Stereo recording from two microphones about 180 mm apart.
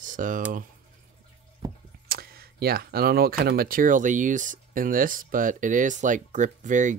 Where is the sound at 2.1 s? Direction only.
55° right (ahead or behind).